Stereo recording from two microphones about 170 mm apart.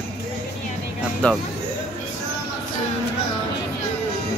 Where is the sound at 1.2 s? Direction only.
10° left (ahead or behind).